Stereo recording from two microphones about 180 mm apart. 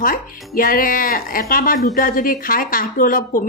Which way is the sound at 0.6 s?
50° left (ahead or behind).